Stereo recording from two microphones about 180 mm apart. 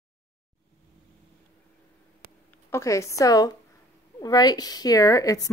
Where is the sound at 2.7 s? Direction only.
15° left (ahead or behind).